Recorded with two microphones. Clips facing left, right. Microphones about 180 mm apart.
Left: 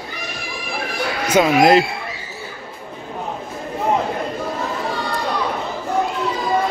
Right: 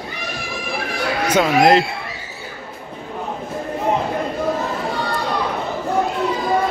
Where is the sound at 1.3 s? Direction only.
10° left (ahead or behind).